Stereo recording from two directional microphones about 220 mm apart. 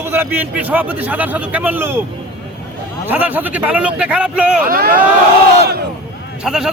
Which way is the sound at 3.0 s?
10° right (ahead or behind).